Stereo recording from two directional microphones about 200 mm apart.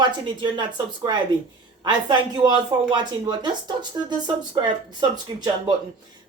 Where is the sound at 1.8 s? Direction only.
20° right (ahead or behind).